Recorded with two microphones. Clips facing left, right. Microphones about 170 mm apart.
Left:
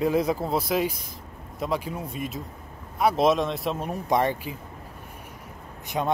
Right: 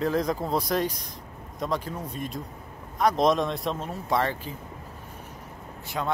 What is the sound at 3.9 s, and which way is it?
Speech, 15° left (ahead or behind).